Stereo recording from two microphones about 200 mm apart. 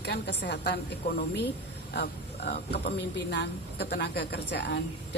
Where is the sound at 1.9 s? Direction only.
55° left (ahead or behind).